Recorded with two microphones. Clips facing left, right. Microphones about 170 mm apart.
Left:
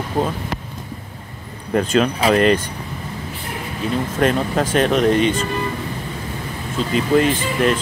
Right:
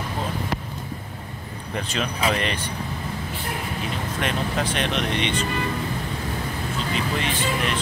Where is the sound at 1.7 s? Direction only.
45° left (ahead or behind).